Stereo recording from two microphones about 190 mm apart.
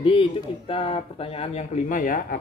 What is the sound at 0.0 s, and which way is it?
A man's voice, 30° left (ahead or behind).